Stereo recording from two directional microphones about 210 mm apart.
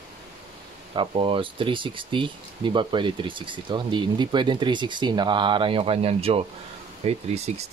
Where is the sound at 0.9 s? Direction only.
25° right (ahead or behind).